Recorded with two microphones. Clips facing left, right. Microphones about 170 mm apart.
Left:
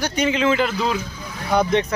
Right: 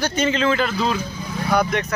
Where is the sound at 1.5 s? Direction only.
25° left (ahead or behind).